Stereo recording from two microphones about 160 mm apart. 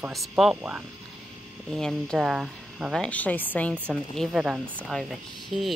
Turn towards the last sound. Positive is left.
turn(degrees=0)  # may be behind; listen again after turning